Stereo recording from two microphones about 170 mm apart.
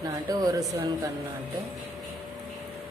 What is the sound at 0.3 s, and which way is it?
Speech, 20° right (ahead or behind).